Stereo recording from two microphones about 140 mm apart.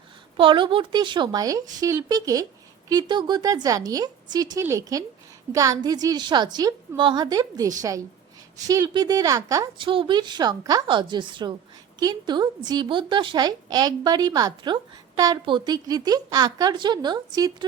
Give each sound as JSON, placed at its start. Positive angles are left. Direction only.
{"t": 0.3, "sound": "a woman's voice", "side_deg": -35}
{"t": 9.7, "sound": "a woman's voice", "side_deg": -35}